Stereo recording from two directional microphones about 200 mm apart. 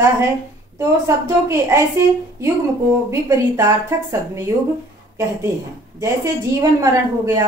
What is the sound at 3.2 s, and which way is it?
Speech, 15° right (ahead or behind).